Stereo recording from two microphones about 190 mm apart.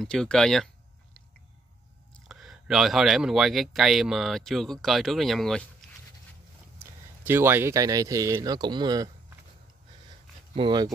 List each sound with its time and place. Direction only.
0.0 s speech: 5° left (ahead or behind)
2.1 s speech: centre (ahead or behind)
6.8 s speech: 10° right (ahead or behind)
10.5 s speech: 25° right (ahead or behind)